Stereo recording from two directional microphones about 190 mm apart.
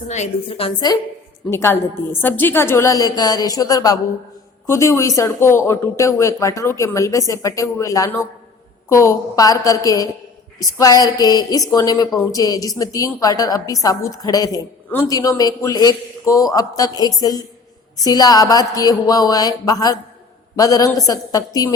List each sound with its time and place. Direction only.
0.1 s a woman's voice: 35° left (ahead or behind)
1.5 s a woman's voice: 15° left (ahead or behind)